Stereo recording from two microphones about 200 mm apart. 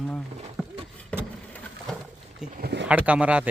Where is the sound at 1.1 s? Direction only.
5° left (ahead or behind).